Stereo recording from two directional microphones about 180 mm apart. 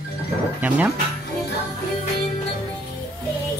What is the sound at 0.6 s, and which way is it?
Speech, 10° right (ahead or behind).